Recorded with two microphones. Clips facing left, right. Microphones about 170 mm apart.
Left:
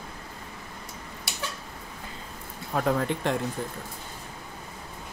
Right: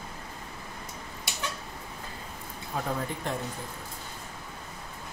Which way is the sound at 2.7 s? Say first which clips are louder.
Left 7 dB; 80° left.